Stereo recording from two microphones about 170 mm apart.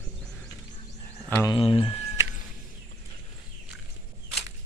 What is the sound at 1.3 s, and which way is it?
Speech, 20° left (ahead or behind).